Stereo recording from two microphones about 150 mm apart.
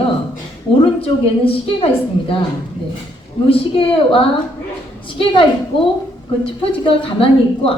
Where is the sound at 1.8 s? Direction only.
40° left (ahead or behind).